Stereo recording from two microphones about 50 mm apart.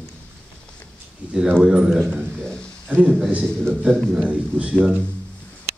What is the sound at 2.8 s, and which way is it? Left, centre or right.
Speech, right.